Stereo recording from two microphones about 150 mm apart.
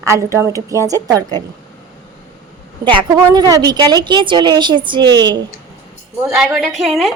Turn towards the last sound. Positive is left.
turn(degrees=0)  # may be behind; listen again after turning